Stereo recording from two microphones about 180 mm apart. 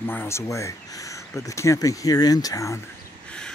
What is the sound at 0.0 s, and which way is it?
Speech, 10° left (ahead or behind).